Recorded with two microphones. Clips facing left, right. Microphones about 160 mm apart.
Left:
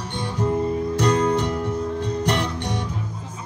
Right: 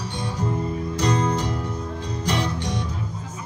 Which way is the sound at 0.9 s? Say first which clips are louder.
Left 2 dB; 55° left (ahead or behind).